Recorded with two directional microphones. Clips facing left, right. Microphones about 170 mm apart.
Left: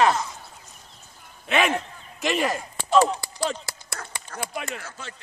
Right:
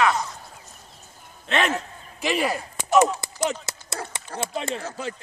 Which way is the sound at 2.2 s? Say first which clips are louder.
Even; 5° right (ahead or behind).